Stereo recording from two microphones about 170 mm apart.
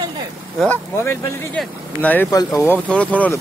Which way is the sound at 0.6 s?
10° left (ahead or behind).